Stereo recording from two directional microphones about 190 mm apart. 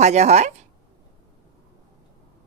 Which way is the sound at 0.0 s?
35° right (ahead or behind).